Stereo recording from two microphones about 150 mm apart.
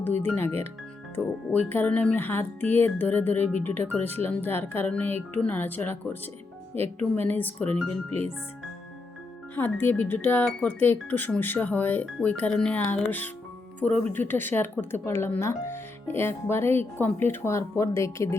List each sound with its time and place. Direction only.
0.0 s speech: 15° left (ahead or behind)
9.6 s speech: 10° left (ahead or behind)